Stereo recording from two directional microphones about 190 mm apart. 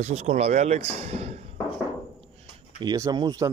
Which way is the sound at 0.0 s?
35° right (ahead or behind).